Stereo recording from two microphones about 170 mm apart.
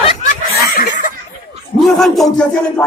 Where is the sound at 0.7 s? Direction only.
50° left (ahead or behind).